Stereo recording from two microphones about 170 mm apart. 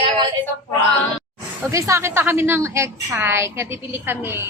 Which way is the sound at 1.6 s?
20° right (ahead or behind).